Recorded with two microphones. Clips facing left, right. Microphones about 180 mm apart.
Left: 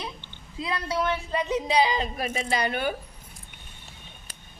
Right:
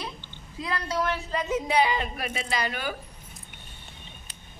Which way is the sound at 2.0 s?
30° left (ahead or behind).